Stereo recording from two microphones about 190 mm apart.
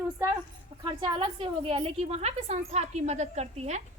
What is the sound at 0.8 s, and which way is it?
A woman's voice, 25° right (ahead or behind).